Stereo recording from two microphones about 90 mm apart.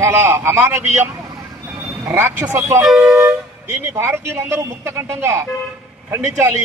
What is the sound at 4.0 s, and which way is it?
A man's voice, 30° right (ahead or behind).